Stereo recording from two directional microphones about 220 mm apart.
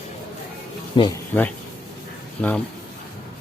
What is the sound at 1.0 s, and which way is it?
Speech, 20° left (ahead or behind).